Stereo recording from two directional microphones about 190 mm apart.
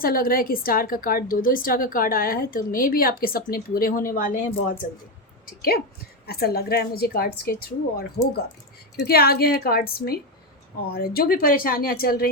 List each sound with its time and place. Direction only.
0.0 s a woman's voice: 50° left (ahead or behind)
9.0 s a woman's voice: 55° left (ahead or behind)